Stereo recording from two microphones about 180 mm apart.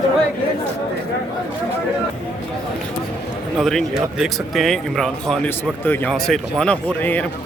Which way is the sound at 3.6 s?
Centre (ahead or behind).